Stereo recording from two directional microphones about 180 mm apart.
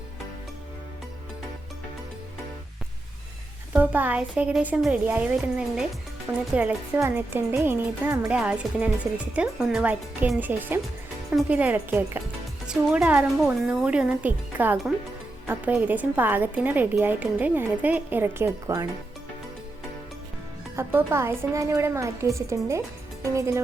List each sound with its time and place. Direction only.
3.7 s speech: 10° right (ahead or behind)
20.7 s speech: 15° right (ahead or behind)